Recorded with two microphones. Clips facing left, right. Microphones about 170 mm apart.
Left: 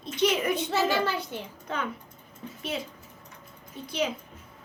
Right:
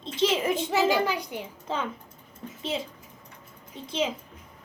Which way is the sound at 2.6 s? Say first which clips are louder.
Right 2 dB; 25° right (ahead or behind).